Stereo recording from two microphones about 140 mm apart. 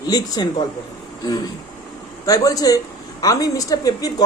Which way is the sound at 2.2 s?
25° left (ahead or behind).